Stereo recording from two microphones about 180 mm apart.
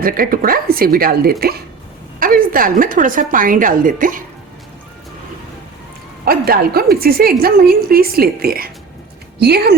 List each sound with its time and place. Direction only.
0.0 s a woman's voice: 55° right (ahead or behind)
6.2 s a woman's voice: 55° right (ahead or behind)